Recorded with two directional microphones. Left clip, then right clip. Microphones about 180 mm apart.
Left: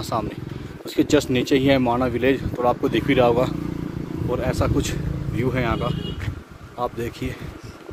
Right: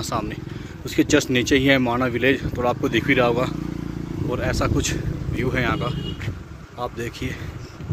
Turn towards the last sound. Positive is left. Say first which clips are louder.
# left 2 dB
turn(degrees=15)  # may be behind; listen again after turning